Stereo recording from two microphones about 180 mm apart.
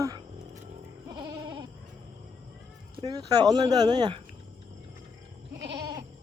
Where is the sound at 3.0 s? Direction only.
20° right (ahead or behind).